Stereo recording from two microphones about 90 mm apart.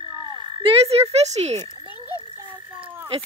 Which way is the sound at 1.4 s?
90° right.